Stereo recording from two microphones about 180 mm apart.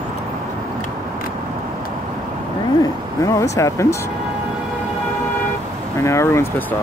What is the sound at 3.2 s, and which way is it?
Speech, 15° left (ahead or behind).